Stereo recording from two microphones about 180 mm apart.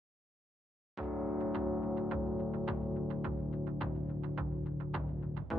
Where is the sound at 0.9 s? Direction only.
Centre (ahead or behind).